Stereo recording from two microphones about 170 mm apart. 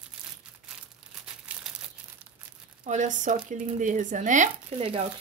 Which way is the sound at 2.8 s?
45° right (ahead or behind).